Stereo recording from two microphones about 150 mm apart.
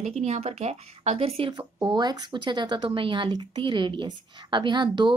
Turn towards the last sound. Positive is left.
turn(degrees=-30)  # may be behind; listen again after turning